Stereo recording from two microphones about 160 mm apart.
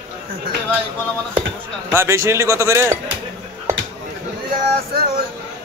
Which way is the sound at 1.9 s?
15° right (ahead or behind).